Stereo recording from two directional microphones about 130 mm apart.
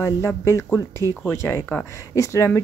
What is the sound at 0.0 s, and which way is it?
Speech, 20° left (ahead or behind).